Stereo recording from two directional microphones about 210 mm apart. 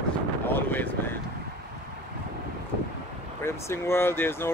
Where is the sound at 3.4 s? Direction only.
10° left (ahead or behind).